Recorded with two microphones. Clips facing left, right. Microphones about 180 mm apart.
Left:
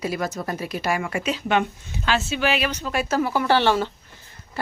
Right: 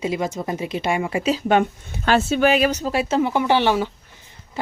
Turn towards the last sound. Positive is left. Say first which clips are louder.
# right 1 dB
turn(degrees=-15)  # may be behind; listen again after turning